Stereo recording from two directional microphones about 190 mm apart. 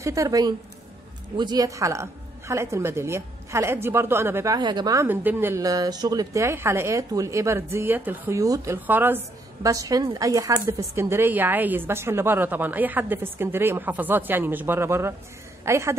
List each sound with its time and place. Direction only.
0.0 s a woman's voice: 15° right (ahead or behind)